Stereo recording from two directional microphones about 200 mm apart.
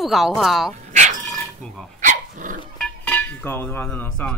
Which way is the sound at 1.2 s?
Centre (ahead or behind).